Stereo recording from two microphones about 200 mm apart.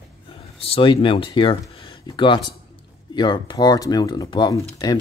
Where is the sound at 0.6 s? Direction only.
25° left (ahead or behind).